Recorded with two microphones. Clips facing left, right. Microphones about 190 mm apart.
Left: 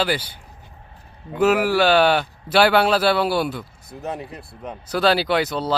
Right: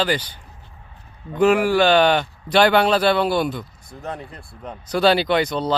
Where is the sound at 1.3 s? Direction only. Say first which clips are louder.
Right 1 dB; 5° left (ahead or behind).